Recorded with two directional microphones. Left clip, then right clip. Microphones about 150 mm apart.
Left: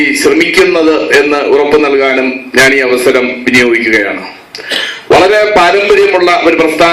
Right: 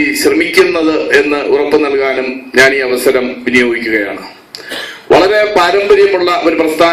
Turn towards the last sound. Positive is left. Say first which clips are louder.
# left 3 dB
turn(degrees=-35)  # may be behind; listen again after turning